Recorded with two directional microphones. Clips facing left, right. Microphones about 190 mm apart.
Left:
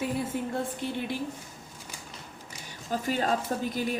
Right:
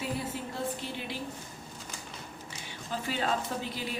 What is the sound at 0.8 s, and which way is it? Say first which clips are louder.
Speech: left 6 dB; 55° left (ahead or behind).